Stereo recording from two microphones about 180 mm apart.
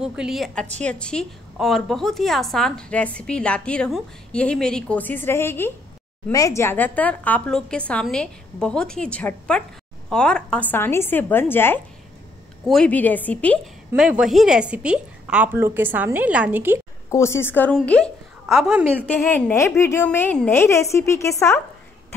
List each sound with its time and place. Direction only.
0.0 s a woman's voice: 5° right (ahead or behind)
13.9 s a woman's voice: 5° right (ahead or behind)
17.1 s a woman's voice: 15° left (ahead or behind)